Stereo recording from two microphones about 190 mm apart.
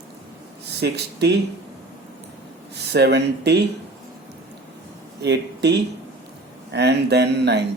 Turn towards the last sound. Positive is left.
turn(degrees=-60)  # may be behind; listen again after turning